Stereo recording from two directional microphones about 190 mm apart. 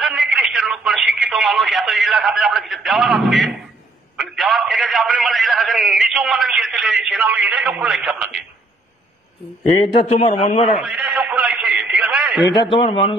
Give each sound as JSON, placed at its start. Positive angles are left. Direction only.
{"t": 0.0, "sound": "a man's voice", "side_deg": -5}
{"t": 10.1, "sound": "a man's voice", "side_deg": 30}
{"t": 10.8, "sound": "radio", "side_deg": -5}
{"t": 12.6, "sound": "speech", "side_deg": 25}